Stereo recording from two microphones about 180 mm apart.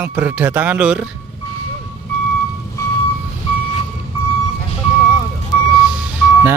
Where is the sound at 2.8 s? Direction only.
15° left (ahead or behind).